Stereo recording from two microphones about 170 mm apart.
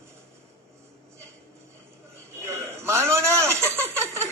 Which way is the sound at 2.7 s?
15° right (ahead or behind).